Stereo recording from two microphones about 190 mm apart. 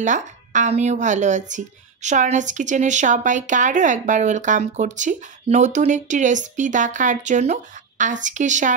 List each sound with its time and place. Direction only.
0.0 s a woman's voice: 40° right (ahead or behind)